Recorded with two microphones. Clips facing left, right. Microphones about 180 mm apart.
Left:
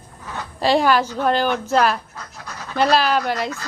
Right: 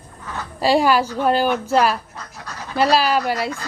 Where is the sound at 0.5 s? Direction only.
10° right (ahead or behind).